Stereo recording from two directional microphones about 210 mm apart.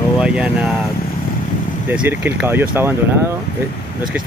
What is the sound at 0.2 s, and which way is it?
Speech, 5° right (ahead or behind).